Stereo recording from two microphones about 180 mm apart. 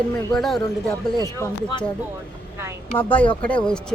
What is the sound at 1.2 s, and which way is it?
Speech, 15° left (ahead or behind).